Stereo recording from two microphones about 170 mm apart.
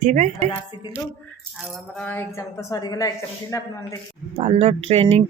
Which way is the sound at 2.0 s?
10° left (ahead or behind).